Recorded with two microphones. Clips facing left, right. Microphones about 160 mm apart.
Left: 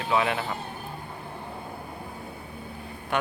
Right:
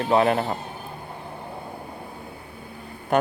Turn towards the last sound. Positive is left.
turn(degrees=-40)  # may be behind; listen again after turning